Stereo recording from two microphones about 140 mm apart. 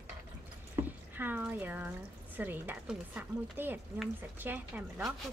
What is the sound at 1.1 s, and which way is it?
Speech, 15° right (ahead or behind).